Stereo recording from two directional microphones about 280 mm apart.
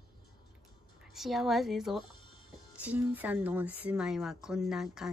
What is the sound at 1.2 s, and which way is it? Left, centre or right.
Speech, centre.